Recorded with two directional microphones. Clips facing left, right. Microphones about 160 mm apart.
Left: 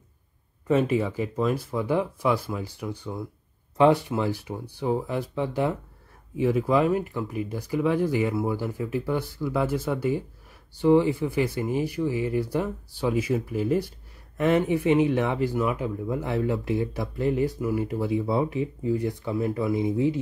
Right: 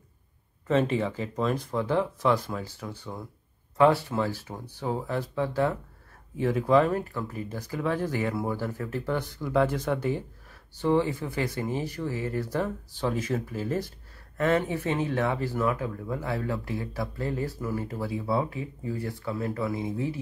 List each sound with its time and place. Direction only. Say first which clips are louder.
0.7 s speech: left 2 dB; 10° left (ahead or behind)